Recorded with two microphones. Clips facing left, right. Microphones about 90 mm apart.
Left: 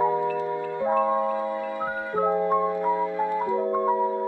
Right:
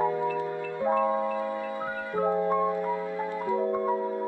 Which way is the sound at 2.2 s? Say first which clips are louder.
Left 2 dB; 20° left (ahead or behind).